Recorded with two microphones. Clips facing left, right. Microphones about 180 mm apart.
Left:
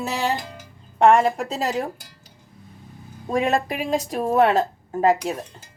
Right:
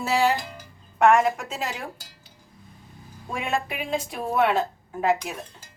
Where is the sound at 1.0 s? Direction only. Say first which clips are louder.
Left 3 dB; 30° left (ahead or behind).